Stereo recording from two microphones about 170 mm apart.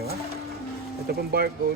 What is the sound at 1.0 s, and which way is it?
Speech, 65° right (ahead or behind).